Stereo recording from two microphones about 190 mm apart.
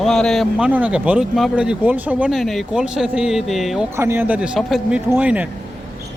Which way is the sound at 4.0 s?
10° right (ahead or behind).